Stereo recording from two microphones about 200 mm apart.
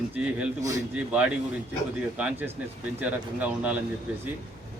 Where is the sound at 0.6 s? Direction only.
15° right (ahead or behind).